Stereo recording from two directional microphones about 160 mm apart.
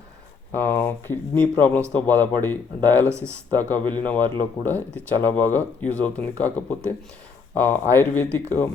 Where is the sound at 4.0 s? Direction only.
10° left (ahead or behind).